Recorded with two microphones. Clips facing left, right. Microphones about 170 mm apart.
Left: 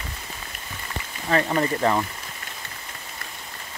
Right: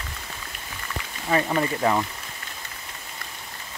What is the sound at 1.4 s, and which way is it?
Speech, centre (ahead or behind).